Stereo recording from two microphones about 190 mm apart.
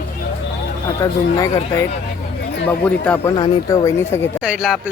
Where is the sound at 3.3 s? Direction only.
20° left (ahead or behind).